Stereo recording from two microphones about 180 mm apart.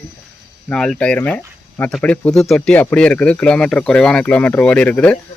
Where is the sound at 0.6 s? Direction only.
5° left (ahead or behind).